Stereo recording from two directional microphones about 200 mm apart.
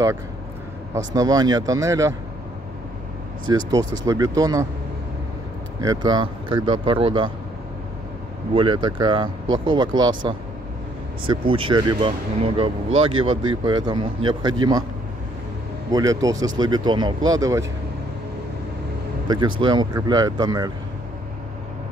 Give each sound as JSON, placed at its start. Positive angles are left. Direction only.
{"t": 0.9, "sound": "speech", "side_deg": -15}
{"t": 3.4, "sound": "speech", "side_deg": -20}
{"t": 5.8, "sound": "speech", "side_deg": -20}
{"t": 8.5, "sound": "speech", "side_deg": -25}
{"t": 15.9, "sound": "speech", "side_deg": -15}
{"t": 19.2, "sound": "speech", "side_deg": -20}